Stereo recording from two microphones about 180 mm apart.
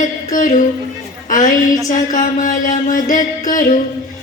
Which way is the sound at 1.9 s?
45° left (ahead or behind).